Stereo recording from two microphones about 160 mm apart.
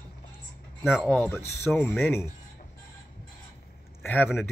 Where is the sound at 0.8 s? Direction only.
Centre (ahead or behind).